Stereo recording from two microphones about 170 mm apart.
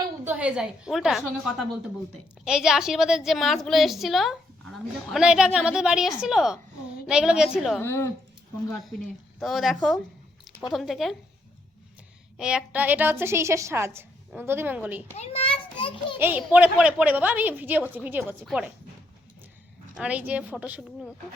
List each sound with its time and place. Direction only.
0.3 s a woman's voice: 5° right (ahead or behind)
7.8 s speech: 15° left (ahead or behind)
8.7 s a woman's voice: centre (ahead or behind)
12.4 s a woman's voice: 5° right (ahead or behind)
15.1 s a child's voice: 35° left (ahead or behind)
16.1 s a woman's voice: 10° right (ahead or behind)
20.0 s a woman's voice: 10° right (ahead or behind)